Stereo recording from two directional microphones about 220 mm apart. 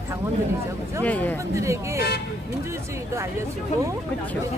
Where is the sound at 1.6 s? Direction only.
15° right (ahead or behind).